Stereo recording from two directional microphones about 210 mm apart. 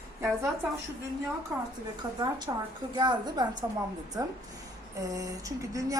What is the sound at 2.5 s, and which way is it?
A woman's voice, 20° right (ahead or behind).